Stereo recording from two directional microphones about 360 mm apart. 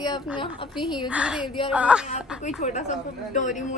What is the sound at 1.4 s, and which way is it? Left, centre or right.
Speech, centre.